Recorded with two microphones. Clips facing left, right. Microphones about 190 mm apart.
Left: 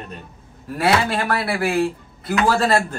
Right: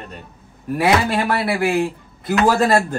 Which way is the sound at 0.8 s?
20° right (ahead or behind).